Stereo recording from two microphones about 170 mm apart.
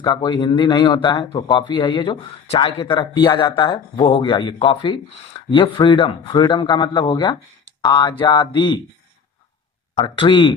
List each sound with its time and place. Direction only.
0.0 s speech: 25° left (ahead or behind)
10.0 s speech: 30° left (ahead or behind)